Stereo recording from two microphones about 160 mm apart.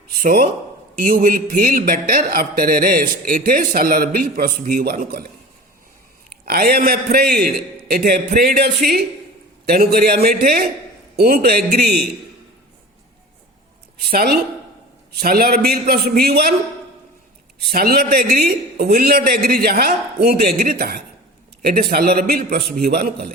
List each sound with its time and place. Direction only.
0.1 s a man's voice: 65° right (ahead or behind)
6.4 s a man's voice: 70° right (ahead or behind)
14.1 s a man's voice: 70° right (ahead or behind)
17.6 s a man's voice: 70° right (ahead or behind)